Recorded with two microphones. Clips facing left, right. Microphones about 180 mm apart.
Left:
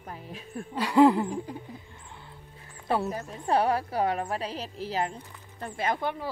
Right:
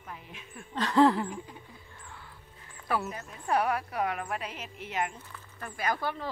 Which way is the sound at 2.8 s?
25° left (ahead or behind).